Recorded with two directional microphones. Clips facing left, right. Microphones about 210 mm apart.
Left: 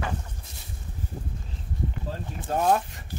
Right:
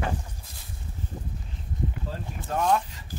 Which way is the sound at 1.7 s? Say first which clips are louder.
Even; 20° right (ahead or behind).